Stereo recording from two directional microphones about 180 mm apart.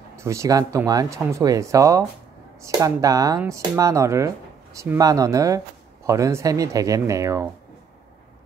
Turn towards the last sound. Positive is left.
turn(degrees=-20)  # may be behind; listen again after turning